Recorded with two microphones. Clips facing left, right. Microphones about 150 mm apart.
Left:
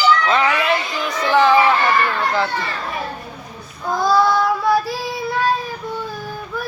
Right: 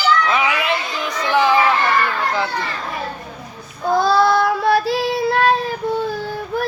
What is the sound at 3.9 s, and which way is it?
Child singing, 65° right (ahead or behind).